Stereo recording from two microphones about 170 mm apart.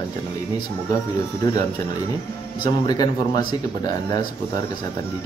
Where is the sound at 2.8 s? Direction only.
20° left (ahead or behind).